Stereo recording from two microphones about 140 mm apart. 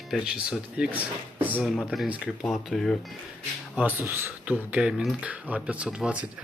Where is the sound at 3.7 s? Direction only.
10° right (ahead or behind).